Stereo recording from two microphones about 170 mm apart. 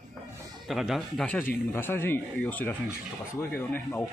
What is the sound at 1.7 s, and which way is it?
Speech, 15° left (ahead or behind).